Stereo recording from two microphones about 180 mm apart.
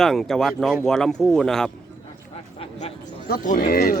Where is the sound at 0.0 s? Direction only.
Centre (ahead or behind).